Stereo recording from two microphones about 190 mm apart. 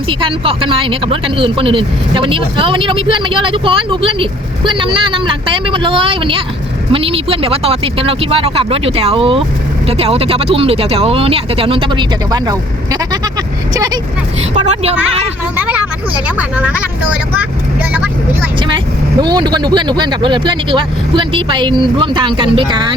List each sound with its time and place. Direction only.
0.1 s speech: 25° right (ahead or behind)
14.5 s a woman's voice: 35° right (ahead or behind)
15.5 s speech: 10° right (ahead or behind)
19.2 s speech: 20° right (ahead or behind)